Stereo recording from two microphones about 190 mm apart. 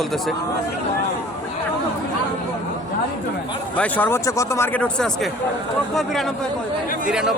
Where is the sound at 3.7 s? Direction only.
10° left (ahead or behind).